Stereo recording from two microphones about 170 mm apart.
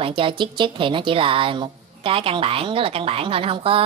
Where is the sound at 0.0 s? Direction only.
30° right (ahead or behind).